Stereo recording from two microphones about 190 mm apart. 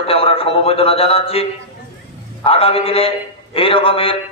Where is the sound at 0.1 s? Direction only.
30° left (ahead or behind).